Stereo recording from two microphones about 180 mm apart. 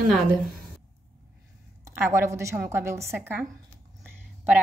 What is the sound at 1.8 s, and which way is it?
A woman's voice, 15° right (ahead or behind).